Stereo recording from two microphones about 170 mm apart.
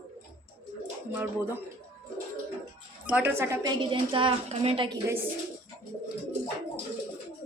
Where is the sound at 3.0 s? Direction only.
10° right (ahead or behind).